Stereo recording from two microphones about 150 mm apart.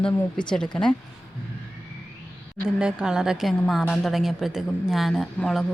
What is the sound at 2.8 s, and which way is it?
A woman's voice, 5° right (ahead or behind).